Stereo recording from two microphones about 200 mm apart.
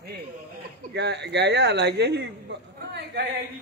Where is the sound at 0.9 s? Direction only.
55° right (ahead or behind).